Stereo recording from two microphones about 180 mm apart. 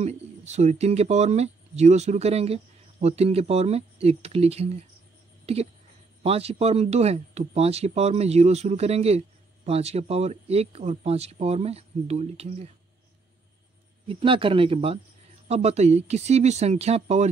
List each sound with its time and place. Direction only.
0.0 s speech: 35° right (ahead or behind)
14.0 s a man's voice: 30° right (ahead or behind)